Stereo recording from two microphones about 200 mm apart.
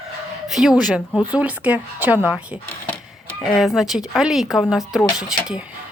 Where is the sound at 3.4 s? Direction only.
Centre (ahead or behind).